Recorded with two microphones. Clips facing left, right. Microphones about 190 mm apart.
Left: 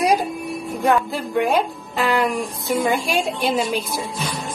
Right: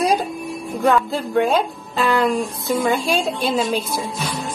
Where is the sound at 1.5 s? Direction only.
15° left (ahead or behind).